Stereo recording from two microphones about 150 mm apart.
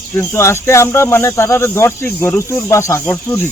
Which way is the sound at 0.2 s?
15° left (ahead or behind).